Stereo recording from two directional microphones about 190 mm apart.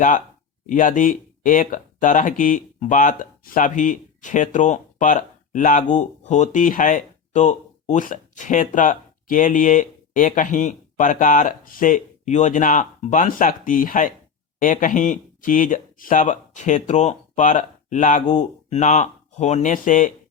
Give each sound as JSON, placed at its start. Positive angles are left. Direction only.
{"t": 0.7, "sound": "speech", "side_deg": 45}